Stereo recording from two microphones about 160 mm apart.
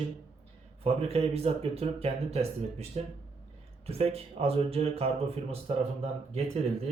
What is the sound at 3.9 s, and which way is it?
Speech, 40° right (ahead or behind).